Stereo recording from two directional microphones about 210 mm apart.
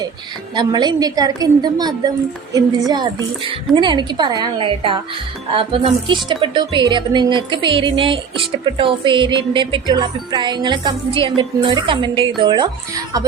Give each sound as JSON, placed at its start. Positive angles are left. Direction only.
{"t": 0.5, "sound": "music", "side_deg": -20}